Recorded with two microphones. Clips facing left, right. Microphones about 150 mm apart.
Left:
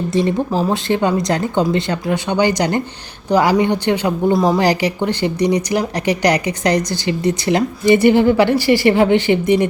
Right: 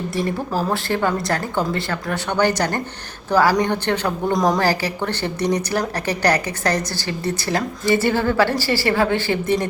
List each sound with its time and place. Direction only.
0.1 s speech: 20° left (ahead or behind)
4.6 s speech: 15° left (ahead or behind)